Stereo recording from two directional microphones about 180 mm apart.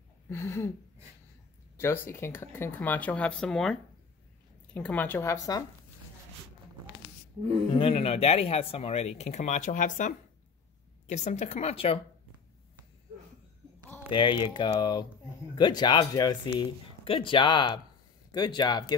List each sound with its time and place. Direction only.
0.3 s speech: 15° left (ahead or behind)
1.8 s speech: 15° left (ahead or behind)
7.7 s speech: 30° left (ahead or behind)
14.1 s speech: 25° left (ahead or behind)